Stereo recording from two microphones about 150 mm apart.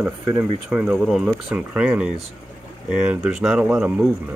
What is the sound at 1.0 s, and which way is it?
Speech, centre (ahead or behind).